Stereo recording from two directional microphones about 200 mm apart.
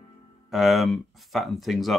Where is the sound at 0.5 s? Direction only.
Centre (ahead or behind).